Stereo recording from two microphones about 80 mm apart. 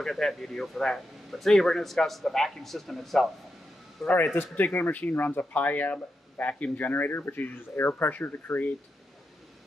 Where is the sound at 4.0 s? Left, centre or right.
Left.